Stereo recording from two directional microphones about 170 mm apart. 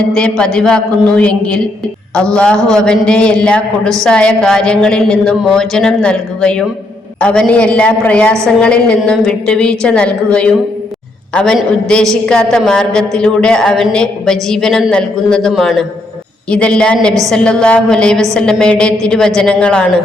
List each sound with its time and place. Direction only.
0.1 s a man's voice: 5° left (ahead or behind)